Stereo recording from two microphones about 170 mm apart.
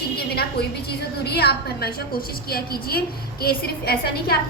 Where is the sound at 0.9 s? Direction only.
70° left (ahead or behind).